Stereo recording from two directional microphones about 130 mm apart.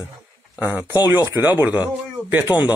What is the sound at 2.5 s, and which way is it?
Speech, 35° left (ahead or behind).